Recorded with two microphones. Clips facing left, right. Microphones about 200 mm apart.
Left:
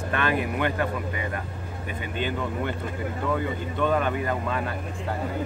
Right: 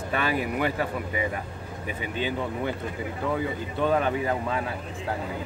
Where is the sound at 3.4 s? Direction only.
5° right (ahead or behind).